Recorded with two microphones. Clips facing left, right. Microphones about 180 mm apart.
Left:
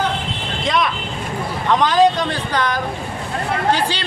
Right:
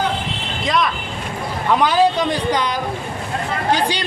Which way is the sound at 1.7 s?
10° right (ahead or behind).